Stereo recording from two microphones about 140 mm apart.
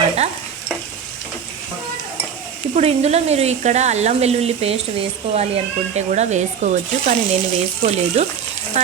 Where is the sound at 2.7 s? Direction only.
50° right (ahead or behind).